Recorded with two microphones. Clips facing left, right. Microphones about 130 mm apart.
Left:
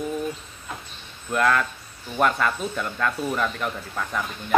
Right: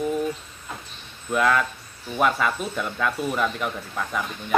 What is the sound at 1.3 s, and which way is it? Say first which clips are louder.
Speech: even; 5° right (ahead or behind).